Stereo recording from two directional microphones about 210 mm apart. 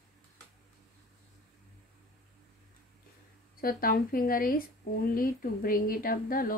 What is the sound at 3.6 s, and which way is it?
Speech, 45° left (ahead or behind).